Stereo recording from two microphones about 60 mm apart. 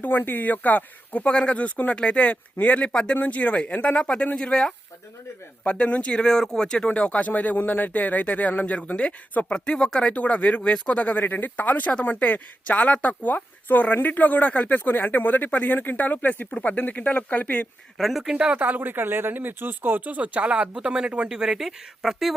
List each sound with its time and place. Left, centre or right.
0.0 s speech: left
9.7 s speech: centre
17.9 s speech: centre
18.5 s speech: right; by 22.3 s centre